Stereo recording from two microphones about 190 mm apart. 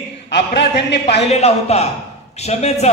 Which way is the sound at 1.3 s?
35° left (ahead or behind).